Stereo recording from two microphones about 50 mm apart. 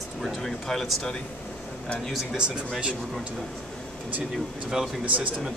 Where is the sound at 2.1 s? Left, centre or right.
Centre.